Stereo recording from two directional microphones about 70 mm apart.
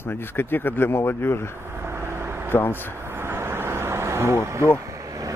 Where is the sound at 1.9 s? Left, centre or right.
Right.